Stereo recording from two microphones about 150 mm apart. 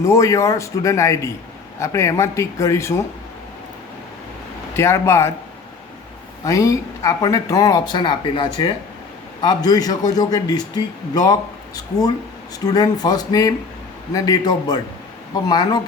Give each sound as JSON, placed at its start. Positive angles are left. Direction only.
{"t": 0.0, "sound": "a man's voice", "side_deg": 20}
{"t": 4.8, "sound": "a man's voice", "side_deg": 20}
{"t": 6.4, "sound": "a man's voice", "side_deg": 20}